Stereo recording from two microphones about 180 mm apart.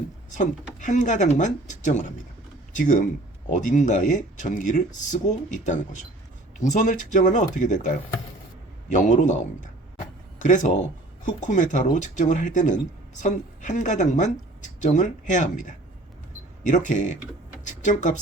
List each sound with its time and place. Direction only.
0.3 s speech: 45° left (ahead or behind)
6.6 s a man's voice: 45° left (ahead or behind)
10.4 s speech: 45° left (ahead or behind)